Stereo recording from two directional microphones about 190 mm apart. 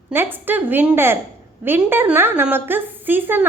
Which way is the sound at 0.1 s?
10° right (ahead or behind).